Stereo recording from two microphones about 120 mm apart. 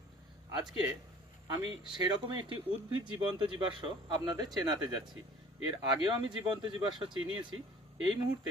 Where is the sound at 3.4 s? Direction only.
40° right (ahead or behind).